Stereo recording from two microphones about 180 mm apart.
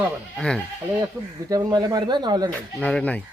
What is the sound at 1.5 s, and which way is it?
Speech, 25° right (ahead or behind).